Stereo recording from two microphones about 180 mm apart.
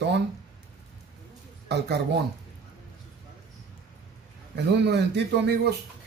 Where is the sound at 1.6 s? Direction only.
65° right (ahead or behind).